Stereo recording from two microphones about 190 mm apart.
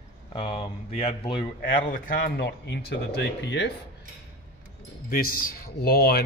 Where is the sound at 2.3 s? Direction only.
65° left (ahead or behind).